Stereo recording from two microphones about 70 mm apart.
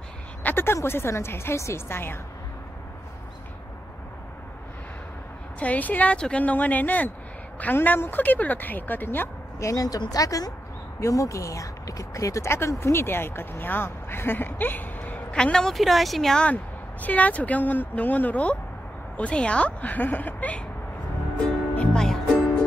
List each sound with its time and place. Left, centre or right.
0.4 s speech: left
5.6 s speech: left
9.6 s a woman's voice: left
11.0 s speech: left
12.4 s speech: left
15.3 s speech: centre
16.4 s speech: left
21.9 s music: centre